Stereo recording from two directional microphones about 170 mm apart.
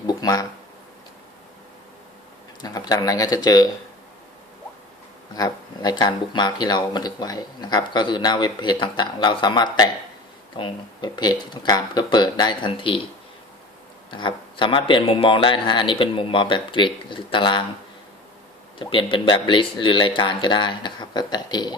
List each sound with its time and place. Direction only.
0.1 s speech: 20° left (ahead or behind)
2.6 s speech: 25° left (ahead or behind)
5.4 s speech: 25° left (ahead or behind)
14.1 s speech: 30° left (ahead or behind)
18.8 s speech: 30° left (ahead or behind)